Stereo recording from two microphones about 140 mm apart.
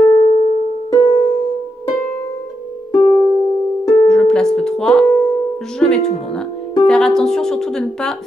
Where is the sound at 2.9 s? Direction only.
35° left (ahead or behind).